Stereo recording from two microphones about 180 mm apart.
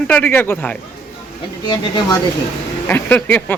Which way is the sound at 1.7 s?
25° left (ahead or behind).